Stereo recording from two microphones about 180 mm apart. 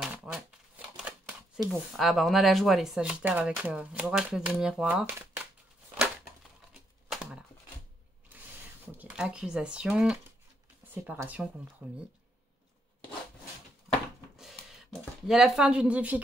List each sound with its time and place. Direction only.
0.0 s shuffling cards: 5° right (ahead or behind)
1.7 s speech: centre (ahead or behind)
7.1 s typewriter: 5° right (ahead or behind)
8.9 s speech: 5° right (ahead or behind)
14.3 s a sound: centre (ahead or behind)